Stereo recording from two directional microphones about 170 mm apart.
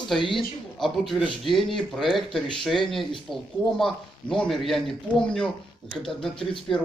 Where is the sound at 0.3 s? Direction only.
Centre (ahead or behind).